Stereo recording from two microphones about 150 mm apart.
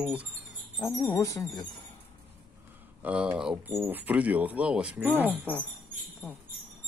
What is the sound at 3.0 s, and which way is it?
Speech, 10° right (ahead or behind).